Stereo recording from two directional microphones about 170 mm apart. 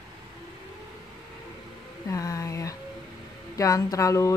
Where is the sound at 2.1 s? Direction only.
20° left (ahead or behind).